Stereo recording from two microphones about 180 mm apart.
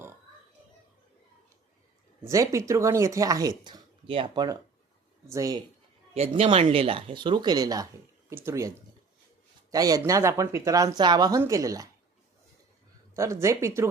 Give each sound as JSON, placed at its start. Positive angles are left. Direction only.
{"t": 2.2, "sound": "speech", "side_deg": -15}
{"t": 5.3, "sound": "speech", "side_deg": -20}
{"t": 6.1, "sound": "speech", "side_deg": -35}
{"t": 9.7, "sound": "speech", "side_deg": -20}
{"t": 13.1, "sound": "speech", "side_deg": -15}